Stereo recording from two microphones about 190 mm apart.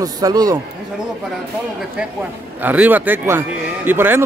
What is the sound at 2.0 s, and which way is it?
A man's voice, 5° right (ahead or behind).